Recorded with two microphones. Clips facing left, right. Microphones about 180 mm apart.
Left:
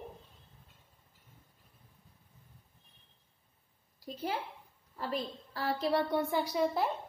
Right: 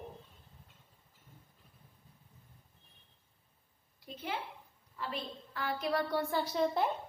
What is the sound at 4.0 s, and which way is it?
A woman's voice, 35° left (ahead or behind).